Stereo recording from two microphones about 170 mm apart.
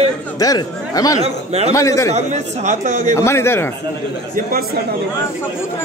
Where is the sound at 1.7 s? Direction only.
20° left (ahead or behind).